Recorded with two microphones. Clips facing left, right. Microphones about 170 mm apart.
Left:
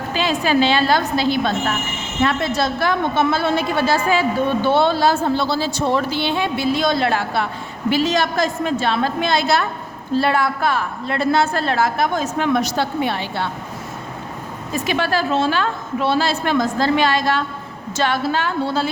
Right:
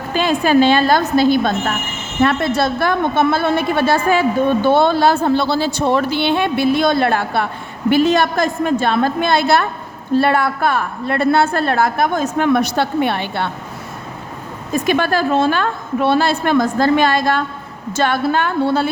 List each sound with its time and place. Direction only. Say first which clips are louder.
0.1 s a woman's voice: right 4 dB; 50° right (ahead or behind)
14.7 s a woman's voice: right 4 dB; 50° right (ahead or behind)